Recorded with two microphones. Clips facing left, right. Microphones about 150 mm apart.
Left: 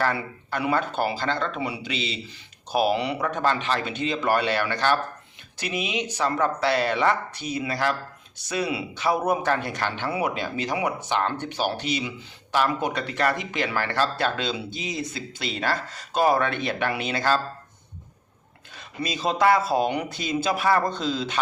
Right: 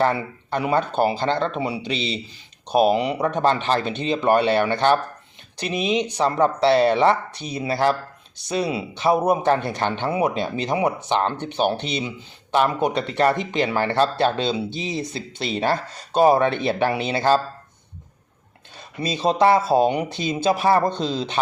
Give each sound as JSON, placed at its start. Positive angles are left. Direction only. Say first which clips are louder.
{"t": 0.0, "sound": "speech", "louder": "right 5 dB", "side_deg": -25}
{"t": 18.7, "sound": "speech", "louder": "right 3 dB", "side_deg": -30}